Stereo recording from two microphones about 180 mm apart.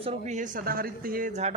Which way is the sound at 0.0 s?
40° right (ahead or behind).